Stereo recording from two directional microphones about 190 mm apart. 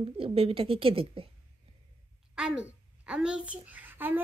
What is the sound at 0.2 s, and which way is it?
A woman's voice, 30° right (ahead or behind).